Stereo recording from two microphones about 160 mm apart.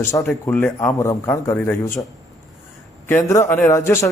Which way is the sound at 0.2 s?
5° left (ahead or behind).